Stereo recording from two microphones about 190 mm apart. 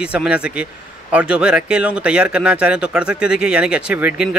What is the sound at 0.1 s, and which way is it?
Speech, 5° right (ahead or behind).